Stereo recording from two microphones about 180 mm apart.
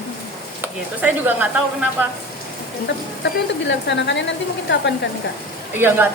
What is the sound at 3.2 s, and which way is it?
A woman's voice, 75° left (ahead or behind).